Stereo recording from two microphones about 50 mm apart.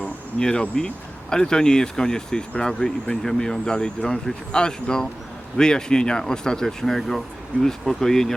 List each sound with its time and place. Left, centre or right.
0.3 s speech: centre